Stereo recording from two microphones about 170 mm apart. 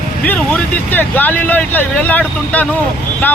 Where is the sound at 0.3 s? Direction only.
10° left (ahead or behind).